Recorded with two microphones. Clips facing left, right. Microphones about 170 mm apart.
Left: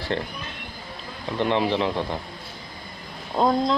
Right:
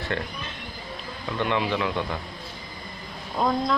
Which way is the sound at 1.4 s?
35° left (ahead or behind).